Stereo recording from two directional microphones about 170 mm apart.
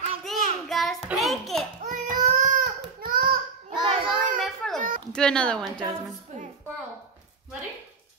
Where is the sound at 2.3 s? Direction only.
55° right (ahead or behind).